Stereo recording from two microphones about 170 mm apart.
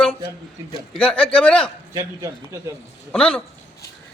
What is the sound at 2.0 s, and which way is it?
Speech, 20° right (ahead or behind).